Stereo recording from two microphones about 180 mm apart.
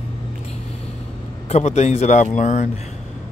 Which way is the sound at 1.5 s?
40° left (ahead or behind).